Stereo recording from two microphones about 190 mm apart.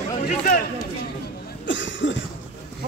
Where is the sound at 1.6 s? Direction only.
75° left (ahead or behind).